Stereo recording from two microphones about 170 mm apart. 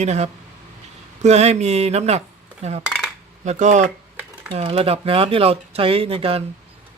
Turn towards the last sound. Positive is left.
turn(degrees=-35)  # may be behind; listen again after turning